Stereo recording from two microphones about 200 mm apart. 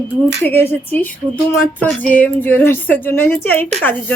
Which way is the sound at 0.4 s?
10° left (ahead or behind).